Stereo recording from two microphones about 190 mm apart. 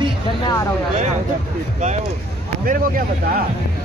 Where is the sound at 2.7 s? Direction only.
45° right (ahead or behind).